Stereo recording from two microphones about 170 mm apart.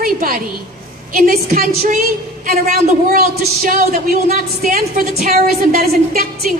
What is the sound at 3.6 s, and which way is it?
A woman's voice, 55° right (ahead or behind).